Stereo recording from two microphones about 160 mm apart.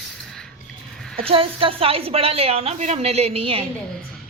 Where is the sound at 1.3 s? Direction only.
35° right (ahead or behind).